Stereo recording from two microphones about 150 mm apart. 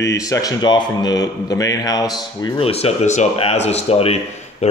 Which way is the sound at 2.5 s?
40° left (ahead or behind).